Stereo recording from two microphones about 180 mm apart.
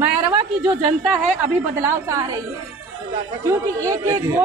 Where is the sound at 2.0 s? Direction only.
15° right (ahead or behind).